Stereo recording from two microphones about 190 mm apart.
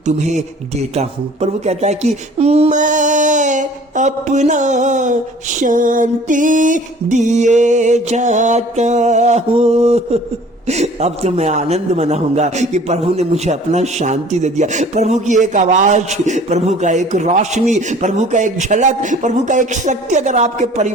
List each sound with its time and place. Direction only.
0.0 s a man's voice: 40° right (ahead or behind)